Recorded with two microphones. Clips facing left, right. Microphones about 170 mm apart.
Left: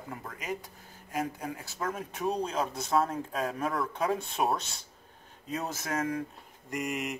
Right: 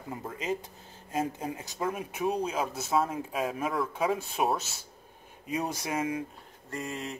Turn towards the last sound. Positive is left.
turn(degrees=15)  # may be behind; listen again after turning